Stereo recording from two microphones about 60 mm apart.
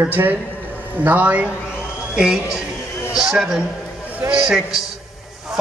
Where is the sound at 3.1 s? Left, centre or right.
Centre.